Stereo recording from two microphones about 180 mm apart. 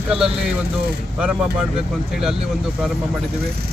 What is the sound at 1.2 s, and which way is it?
Speech, 5° right (ahead or behind).